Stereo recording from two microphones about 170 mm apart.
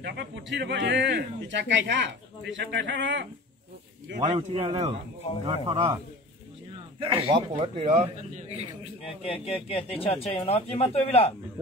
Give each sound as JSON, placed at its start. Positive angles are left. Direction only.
{"t": 0.0, "sound": "speech", "side_deg": -85}
{"t": 4.3, "sound": "speech", "side_deg": -40}
{"t": 7.0, "sound": "speech", "side_deg": -30}
{"t": 9.2, "sound": "speech", "side_deg": 35}